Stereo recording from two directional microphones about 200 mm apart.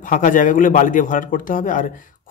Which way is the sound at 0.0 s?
40° left (ahead or behind).